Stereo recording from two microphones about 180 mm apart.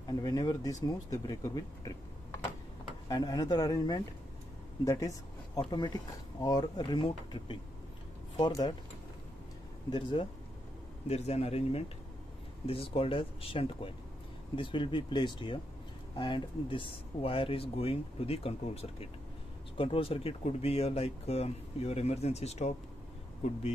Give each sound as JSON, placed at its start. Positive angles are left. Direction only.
{"t": 0.0, "sound": "speech", "side_deg": 20}
{"t": 9.8, "sound": "speech", "side_deg": 25}
{"t": 11.1, "sound": "speech", "side_deg": 35}